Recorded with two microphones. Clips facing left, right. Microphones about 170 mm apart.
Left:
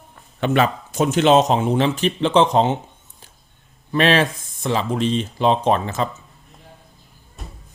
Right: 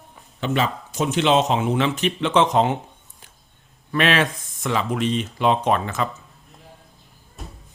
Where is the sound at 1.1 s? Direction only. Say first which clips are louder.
Left 4 dB; 45° left (ahead or behind).